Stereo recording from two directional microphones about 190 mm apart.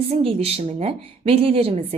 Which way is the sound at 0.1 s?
30° right (ahead or behind).